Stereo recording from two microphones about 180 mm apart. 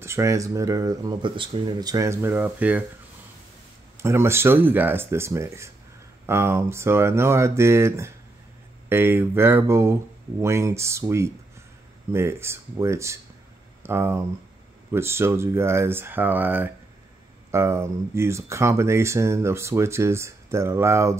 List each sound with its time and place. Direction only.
0.0 s speech: 15° right (ahead or behind)
4.0 s speech: 15° right (ahead or behind)